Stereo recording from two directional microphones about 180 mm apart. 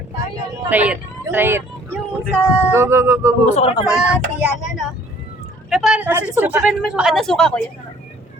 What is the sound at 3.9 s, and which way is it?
Speech, 5° right (ahead or behind).